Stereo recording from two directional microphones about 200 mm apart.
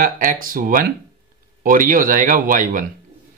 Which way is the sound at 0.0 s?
45° right (ahead or behind).